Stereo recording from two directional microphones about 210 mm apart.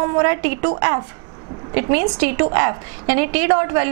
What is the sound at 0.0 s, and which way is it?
A woman's voice, 15° right (ahead or behind).